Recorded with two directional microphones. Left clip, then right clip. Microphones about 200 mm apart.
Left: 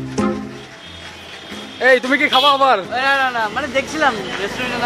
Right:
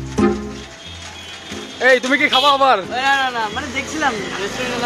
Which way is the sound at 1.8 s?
10° right (ahead or behind).